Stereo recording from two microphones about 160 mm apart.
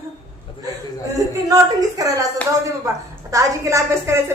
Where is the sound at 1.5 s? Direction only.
20° right (ahead or behind).